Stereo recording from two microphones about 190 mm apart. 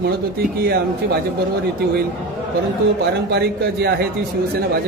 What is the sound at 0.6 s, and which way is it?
Speech, 55° right (ahead or behind).